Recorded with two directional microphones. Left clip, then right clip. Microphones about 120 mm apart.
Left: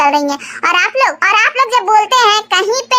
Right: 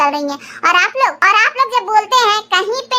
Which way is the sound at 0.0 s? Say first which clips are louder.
Left 4 dB; 20° left (ahead or behind).